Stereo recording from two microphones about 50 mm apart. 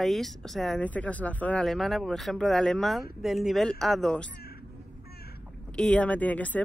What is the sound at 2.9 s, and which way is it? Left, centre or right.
Speech, centre.